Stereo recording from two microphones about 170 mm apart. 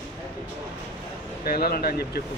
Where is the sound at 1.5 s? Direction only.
65° left (ahead or behind).